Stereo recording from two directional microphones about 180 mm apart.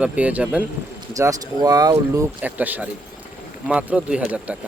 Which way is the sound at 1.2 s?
20° right (ahead or behind).